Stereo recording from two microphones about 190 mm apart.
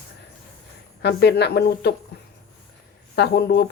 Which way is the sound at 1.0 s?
60° left (ahead or behind).